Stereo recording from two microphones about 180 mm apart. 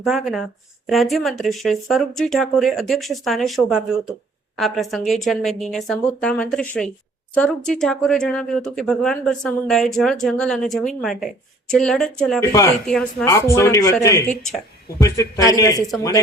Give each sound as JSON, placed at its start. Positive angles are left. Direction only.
{"t": 0.0, "sound": "speech", "side_deg": 0}
{"t": 12.5, "sound": "a man's voice", "side_deg": 20}
{"t": 12.8, "sound": "speech", "side_deg": 5}
{"t": 13.2, "sound": "a man's voice", "side_deg": 15}